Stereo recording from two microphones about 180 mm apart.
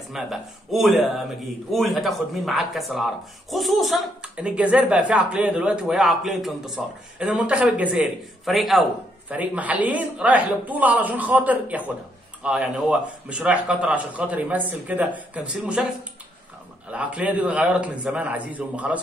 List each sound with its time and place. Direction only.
0.1 s a man's voice: centre (ahead or behind)
16.9 s a man's voice: 5° right (ahead or behind)